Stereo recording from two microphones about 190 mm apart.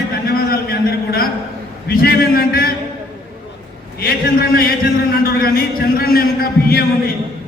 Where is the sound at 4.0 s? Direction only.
50° left (ahead or behind).